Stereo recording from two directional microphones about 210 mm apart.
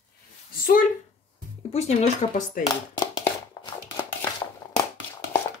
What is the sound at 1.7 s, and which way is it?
Speech, 30° left (ahead or behind).